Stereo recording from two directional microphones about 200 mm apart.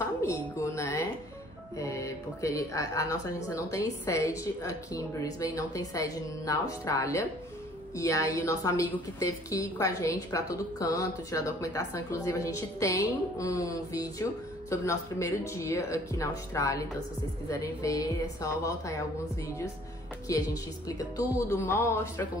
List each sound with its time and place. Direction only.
0.6 s a sound: 15° left (ahead or behind)
1.8 s speech: 15° left (ahead or behind)
20.2 s speech: 15° left (ahead or behind)